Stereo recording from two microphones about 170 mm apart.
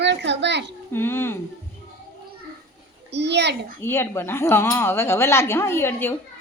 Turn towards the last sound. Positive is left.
turn(degrees=10)  # may be behind; listen again after turning